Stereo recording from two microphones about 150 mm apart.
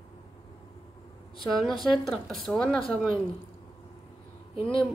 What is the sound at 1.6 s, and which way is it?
Speech, centre (ahead or behind).